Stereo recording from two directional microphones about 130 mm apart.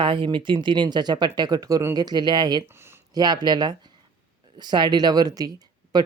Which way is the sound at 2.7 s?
15° right (ahead or behind).